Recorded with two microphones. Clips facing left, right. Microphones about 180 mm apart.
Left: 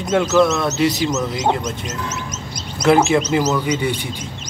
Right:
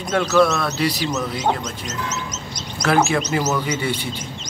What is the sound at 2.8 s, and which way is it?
Speech, 20° left (ahead or behind).